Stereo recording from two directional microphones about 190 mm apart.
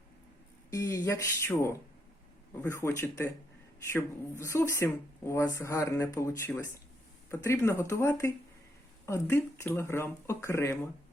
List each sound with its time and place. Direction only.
0.7 s speech: 15° left (ahead or behind)